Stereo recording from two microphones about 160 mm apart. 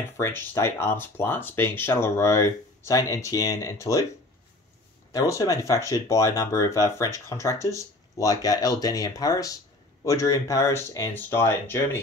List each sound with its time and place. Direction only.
0.2 s speech: 15° left (ahead or behind)
5.1 s speech: 20° left (ahead or behind)